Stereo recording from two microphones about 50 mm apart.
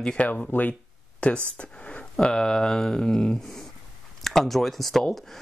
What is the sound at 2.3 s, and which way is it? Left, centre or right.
Speech, centre.